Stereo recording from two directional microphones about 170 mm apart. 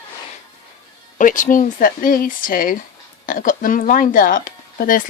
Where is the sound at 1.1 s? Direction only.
50° left (ahead or behind).